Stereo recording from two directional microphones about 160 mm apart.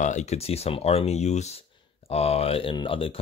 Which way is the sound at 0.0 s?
45° left (ahead or behind).